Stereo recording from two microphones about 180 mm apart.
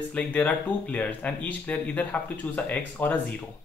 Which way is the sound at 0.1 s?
5° left (ahead or behind).